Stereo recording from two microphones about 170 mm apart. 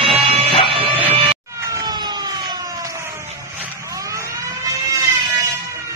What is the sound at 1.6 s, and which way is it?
Vehicle, 20° right (ahead or behind).